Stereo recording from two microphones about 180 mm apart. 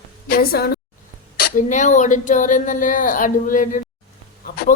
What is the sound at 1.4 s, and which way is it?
Speech, 45° left (ahead or behind).